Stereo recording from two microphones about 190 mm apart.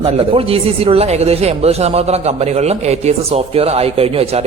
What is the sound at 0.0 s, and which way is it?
Speech, 30° right (ahead or behind).